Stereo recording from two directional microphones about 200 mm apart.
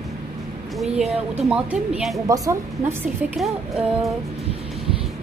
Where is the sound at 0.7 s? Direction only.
Centre (ahead or behind).